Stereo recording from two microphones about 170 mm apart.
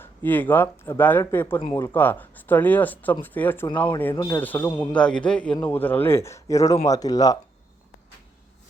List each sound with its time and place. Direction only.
0.0 s speech: 10° left (ahead or behind)
4.1 s speech: 20° left (ahead or behind)
4.4 s speech: 10° left (ahead or behind)